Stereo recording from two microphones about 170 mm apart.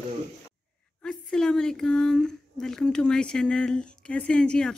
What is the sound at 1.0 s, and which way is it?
A woman's voice, 5° left (ahead or behind).